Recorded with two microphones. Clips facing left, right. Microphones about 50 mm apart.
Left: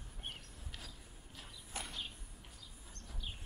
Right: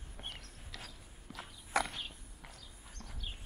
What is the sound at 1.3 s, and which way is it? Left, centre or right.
Mechanisms, right.